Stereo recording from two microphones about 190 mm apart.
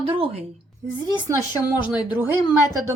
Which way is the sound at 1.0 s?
15° right (ahead or behind).